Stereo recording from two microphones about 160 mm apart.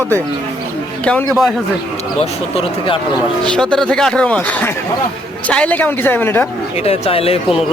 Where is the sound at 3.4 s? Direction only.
5° left (ahead or behind).